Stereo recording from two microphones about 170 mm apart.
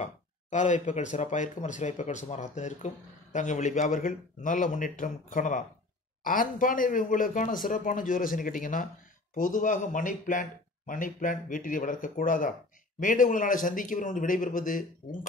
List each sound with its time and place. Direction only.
0.0 s speech: 45° left (ahead or behind)